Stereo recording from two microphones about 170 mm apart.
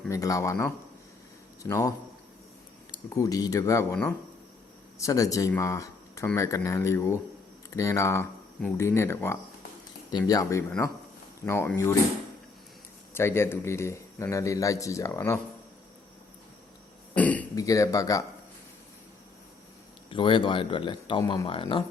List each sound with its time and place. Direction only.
0.1 s speech: 20° left (ahead or behind)
3.2 s speech: 20° left (ahead or behind)
4.9 s speech: 20° left (ahead or behind)
13.1 s speech: 15° left (ahead or behind)
17.2 s throat clearing: 10° left (ahead or behind)
17.5 s speech: 20° left (ahead or behind)
20.1 s speech: 30° left (ahead or behind)